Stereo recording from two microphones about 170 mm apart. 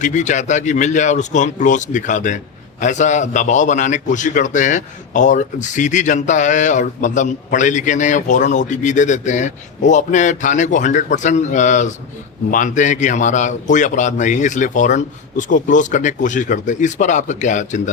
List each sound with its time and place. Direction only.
0.0 s a man's voice: 45° left (ahead or behind)